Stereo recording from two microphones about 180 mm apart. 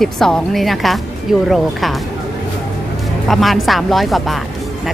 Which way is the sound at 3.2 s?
Centre (ahead or behind).